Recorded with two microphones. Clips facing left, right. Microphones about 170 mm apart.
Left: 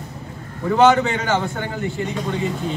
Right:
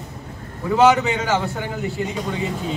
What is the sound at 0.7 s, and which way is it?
A man's voice, 5° right (ahead or behind).